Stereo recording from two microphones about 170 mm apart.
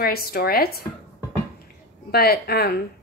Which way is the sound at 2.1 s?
65° left (ahead or behind).